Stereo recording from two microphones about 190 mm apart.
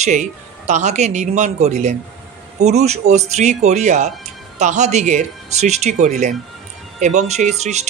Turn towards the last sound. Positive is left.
turn(degrees=-35)  # may be behind; listen again after turning